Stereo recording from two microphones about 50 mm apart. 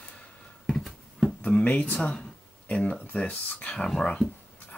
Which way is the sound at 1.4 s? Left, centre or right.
Left.